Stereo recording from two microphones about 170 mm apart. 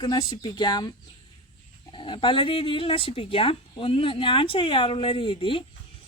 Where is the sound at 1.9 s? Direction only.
30° left (ahead or behind).